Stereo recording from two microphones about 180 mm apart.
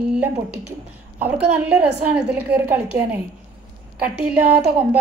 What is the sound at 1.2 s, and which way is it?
A woman's voice, 10° right (ahead or behind).